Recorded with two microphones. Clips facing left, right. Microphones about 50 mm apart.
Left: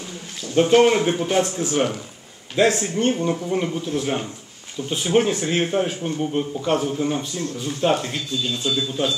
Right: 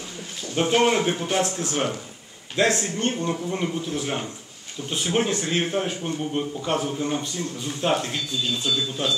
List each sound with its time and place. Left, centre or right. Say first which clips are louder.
0.6 s speech: left 5 dB; centre